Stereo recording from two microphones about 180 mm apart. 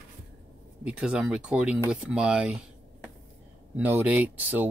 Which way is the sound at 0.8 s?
5° right (ahead or behind).